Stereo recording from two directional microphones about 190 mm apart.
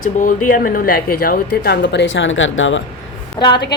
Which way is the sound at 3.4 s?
25° left (ahead or behind).